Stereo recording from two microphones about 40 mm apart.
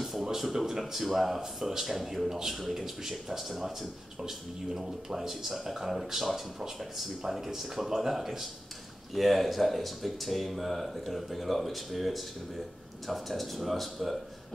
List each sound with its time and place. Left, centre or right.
0.0 s speech: centre